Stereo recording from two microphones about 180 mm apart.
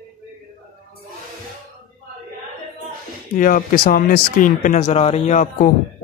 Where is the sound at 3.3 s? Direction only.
50° left (ahead or behind).